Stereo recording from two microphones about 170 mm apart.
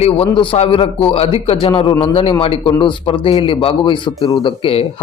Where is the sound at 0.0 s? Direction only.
35° left (ahead or behind).